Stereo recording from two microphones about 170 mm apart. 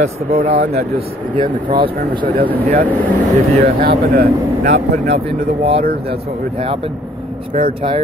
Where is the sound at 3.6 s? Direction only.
60° right (ahead or behind).